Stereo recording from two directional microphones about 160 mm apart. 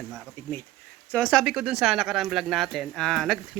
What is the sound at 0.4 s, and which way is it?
Speech, 15° left (ahead or behind).